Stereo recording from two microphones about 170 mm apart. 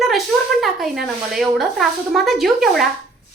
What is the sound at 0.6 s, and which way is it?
Speech, centre (ahead or behind).